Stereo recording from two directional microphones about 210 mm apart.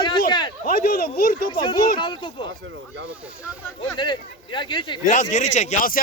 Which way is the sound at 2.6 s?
60° right (ahead or behind).